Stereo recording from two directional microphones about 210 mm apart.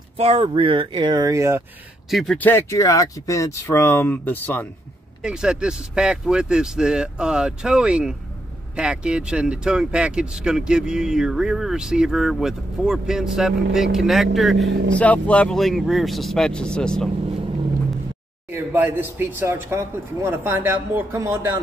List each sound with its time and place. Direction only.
0.2 s speech: 25° right (ahead or behind)
2.0 s speech: centre (ahead or behind)
5.2 s speech: 5° right (ahead or behind)
18.5 s speech: 10° right (ahead or behind)